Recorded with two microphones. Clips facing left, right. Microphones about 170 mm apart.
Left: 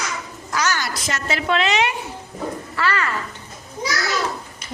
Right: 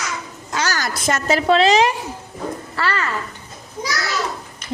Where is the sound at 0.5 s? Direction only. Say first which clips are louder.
Even; 35° right (ahead or behind).